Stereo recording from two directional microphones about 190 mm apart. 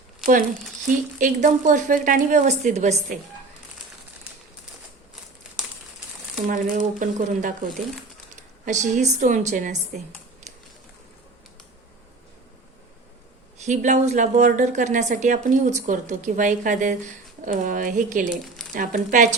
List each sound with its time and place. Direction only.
0.9 s speech: 45° right (ahead or behind)
6.5 s speech: 40° right (ahead or behind)
13.6 s speech: 40° right (ahead or behind)